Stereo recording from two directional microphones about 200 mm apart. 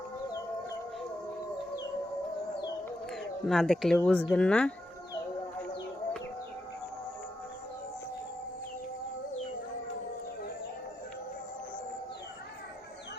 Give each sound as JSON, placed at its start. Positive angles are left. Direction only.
{"t": 3.1, "sound": "speech", "side_deg": 0}